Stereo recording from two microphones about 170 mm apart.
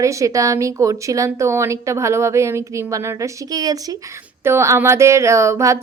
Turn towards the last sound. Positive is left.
turn(degrees=-15)  # may be behind; listen again after turning